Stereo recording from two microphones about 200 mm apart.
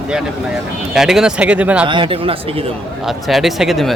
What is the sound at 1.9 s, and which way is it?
Speech, 25° right (ahead or behind).